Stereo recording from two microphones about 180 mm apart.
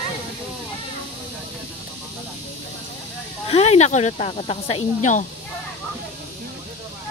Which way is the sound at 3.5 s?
35° left (ahead or behind).